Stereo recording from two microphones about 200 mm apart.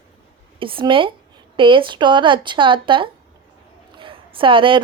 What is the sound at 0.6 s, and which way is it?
A woman's voice, 25° right (ahead or behind).